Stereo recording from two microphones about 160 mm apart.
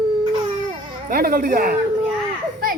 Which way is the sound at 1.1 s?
65° right (ahead or behind).